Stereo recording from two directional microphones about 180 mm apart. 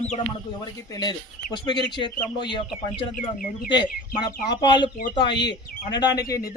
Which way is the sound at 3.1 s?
50° left (ahead or behind).